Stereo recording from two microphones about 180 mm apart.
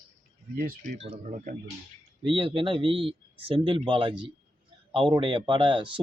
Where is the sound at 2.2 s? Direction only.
30° right (ahead or behind).